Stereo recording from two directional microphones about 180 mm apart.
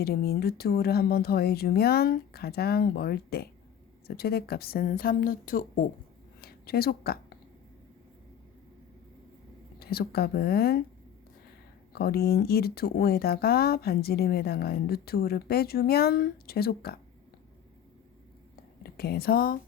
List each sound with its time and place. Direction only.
0.0 s a woman's voice: 60° left (ahead or behind)
9.8 s speech: 60° left (ahead or behind)
11.9 s speech: 60° left (ahead or behind)
18.8 s speech: 60° left (ahead or behind)